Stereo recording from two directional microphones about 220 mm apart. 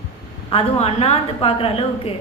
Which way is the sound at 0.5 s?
25° left (ahead or behind).